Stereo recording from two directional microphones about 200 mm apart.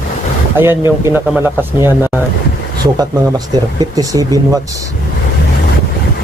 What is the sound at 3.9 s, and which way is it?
Speech, 20° right (ahead or behind).